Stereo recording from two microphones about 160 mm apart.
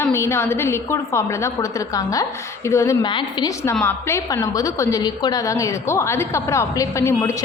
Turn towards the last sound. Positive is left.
turn(degrees=15)  # may be behind; listen again after turning